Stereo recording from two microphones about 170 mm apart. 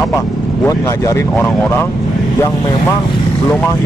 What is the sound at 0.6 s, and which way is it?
Speech, 20° left (ahead or behind).